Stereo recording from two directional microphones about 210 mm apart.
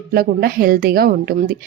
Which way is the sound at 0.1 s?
45° right (ahead or behind).